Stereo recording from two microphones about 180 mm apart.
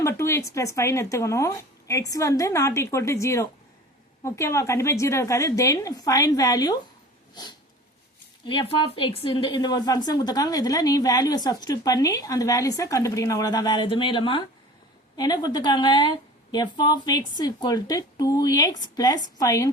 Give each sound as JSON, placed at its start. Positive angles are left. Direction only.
{"t": 0.0, "sound": "speech", "side_deg": 15}
{"t": 8.4, "sound": "a woman's voice", "side_deg": 25}